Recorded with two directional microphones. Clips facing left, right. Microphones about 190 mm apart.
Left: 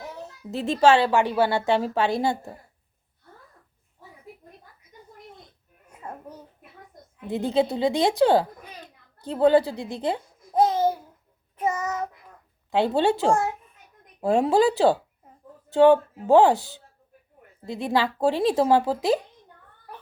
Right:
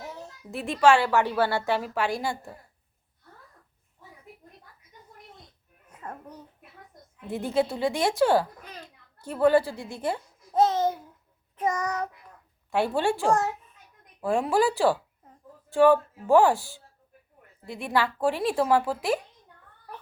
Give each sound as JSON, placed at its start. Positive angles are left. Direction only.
{"t": 0.5, "sound": "a woman's voice", "side_deg": 25}
{"t": 5.9, "sound": "a sound", "side_deg": 10}
{"t": 7.2, "sound": "a woman's voice", "side_deg": 20}
{"t": 11.7, "sound": "child singing", "side_deg": 5}
{"t": 12.7, "sound": "a woman's voice", "side_deg": 20}
{"t": 18.9, "sound": "a woman's voice", "side_deg": 20}